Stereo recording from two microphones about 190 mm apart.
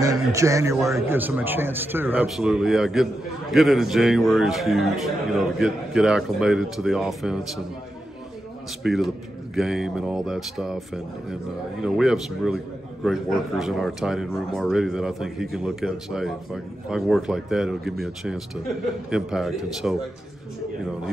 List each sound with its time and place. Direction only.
0.3 s a man's voice: 15° right (ahead or behind); by 7.6 s centre (ahead or behind)
8.8 s a man's voice: centre (ahead or behind)
11.8 s a man's voice: 5° right (ahead or behind)